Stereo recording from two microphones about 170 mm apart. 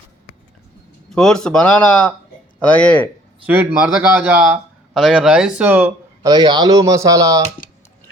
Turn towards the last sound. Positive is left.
turn(degrees=-20)  # may be behind; listen again after turning